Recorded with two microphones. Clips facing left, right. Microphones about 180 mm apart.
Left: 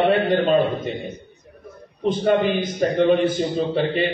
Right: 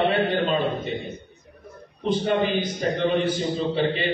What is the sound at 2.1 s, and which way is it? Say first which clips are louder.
A man's voice: left 3 dB; 50° left (ahead or behind).